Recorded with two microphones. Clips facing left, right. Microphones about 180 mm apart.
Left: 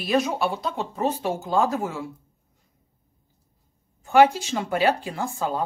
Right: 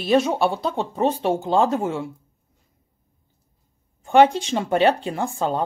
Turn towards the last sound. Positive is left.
turn(degrees=-25)  # may be behind; listen again after turning